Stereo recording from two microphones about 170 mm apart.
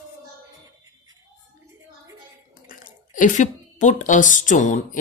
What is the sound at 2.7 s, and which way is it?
Speech, 50° left (ahead or behind).